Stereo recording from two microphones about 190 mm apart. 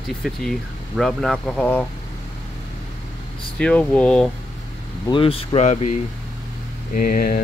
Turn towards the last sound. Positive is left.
turn(degrees=50)  # may be behind; listen again after turning